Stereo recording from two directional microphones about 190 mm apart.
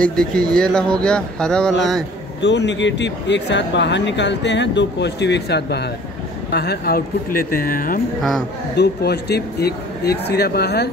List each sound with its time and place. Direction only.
0.1 s speech: 5° left (ahead or behind)
2.4 s speech: 70° left (ahead or behind); by 8.0 s 45° left (ahead or behind)
8.2 s speech: centre (ahead or behind)
8.7 s speech: 60° left (ahead or behind)